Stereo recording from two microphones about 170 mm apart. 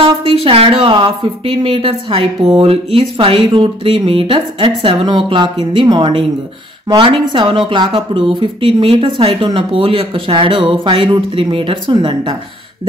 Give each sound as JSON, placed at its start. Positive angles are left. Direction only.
{"t": 0.0, "sound": "speech", "side_deg": -35}